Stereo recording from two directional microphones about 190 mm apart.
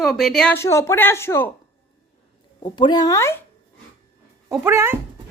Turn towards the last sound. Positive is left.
turn(degrees=-10)  # may be behind; listen again after turning